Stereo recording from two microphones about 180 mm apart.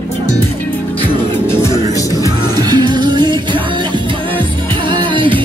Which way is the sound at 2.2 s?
20° right (ahead or behind).